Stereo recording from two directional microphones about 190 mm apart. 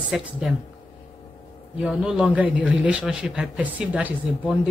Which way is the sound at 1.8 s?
5° right (ahead or behind).